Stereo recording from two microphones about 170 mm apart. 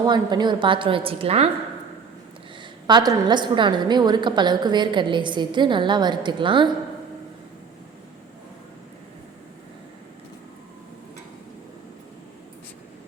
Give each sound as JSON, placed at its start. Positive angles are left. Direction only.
{"t": 0.0, "sound": "a woman's voice", "side_deg": -25}
{"t": 2.8, "sound": "a woman's voice", "side_deg": -25}